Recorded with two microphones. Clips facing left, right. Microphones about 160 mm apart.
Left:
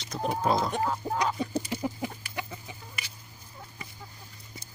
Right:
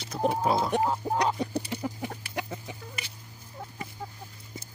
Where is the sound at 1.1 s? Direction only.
65° right (ahead or behind).